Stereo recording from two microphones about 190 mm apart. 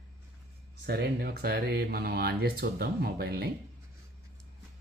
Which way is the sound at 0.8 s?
55° right (ahead or behind).